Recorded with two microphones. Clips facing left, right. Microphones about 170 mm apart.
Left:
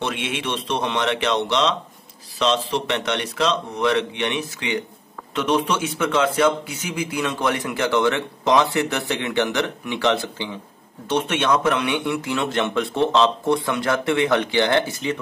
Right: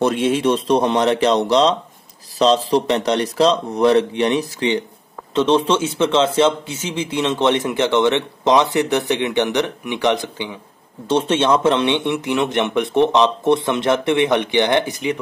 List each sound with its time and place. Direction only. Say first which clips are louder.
0.0 s a man's voice: right 10 dB; 35° right (ahead or behind); by 10.5 s 20° right (ahead or behind)
11.1 s a man's voice: right 4 dB; 30° right (ahead or behind)